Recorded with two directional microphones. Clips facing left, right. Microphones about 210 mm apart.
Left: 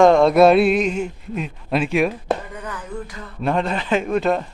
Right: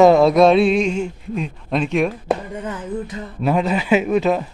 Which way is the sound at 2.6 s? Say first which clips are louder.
Right 5 dB; 25° right (ahead or behind).